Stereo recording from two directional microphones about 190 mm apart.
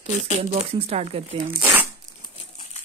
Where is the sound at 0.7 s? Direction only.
35° right (ahead or behind).